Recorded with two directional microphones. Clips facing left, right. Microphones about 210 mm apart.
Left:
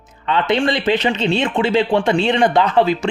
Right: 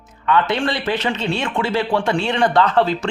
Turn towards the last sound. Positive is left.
turn(degrees=10)  # may be behind; listen again after turning